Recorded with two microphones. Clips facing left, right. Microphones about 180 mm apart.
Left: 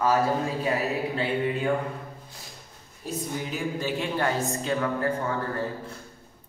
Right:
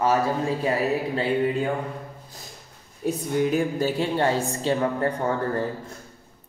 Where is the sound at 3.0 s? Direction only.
50° right (ahead or behind); by 5.6 s 35° right (ahead or behind).